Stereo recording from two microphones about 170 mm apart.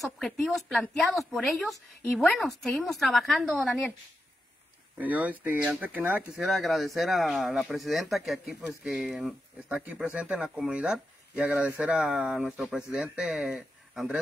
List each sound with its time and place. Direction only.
0.0 s speech: centre (ahead or behind)
4.9 s speech: 10° right (ahead or behind)